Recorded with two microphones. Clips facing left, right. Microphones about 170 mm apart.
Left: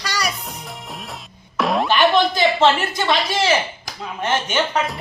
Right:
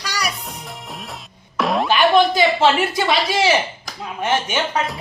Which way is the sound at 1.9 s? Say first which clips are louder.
Right 3 dB; 10° right (ahead or behind).